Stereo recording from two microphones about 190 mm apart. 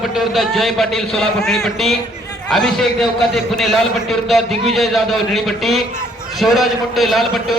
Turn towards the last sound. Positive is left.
turn(degrees=0)  # may be behind; listen again after turning